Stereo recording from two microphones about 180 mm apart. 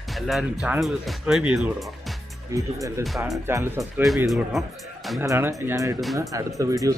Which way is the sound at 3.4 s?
15° right (ahead or behind).